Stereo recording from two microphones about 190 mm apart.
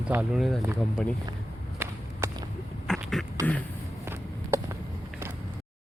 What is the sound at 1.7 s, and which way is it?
Run, 15° right (ahead or behind).